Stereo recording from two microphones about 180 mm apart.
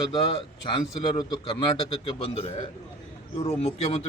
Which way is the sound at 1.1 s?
25° left (ahead or behind).